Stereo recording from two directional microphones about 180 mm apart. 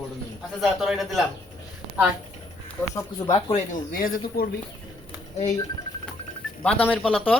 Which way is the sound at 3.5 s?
50° left (ahead or behind).